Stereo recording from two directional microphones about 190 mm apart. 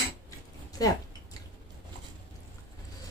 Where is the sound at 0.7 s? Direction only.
20° left (ahead or behind).